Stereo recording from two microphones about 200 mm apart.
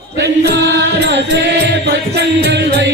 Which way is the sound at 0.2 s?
55° right (ahead or behind).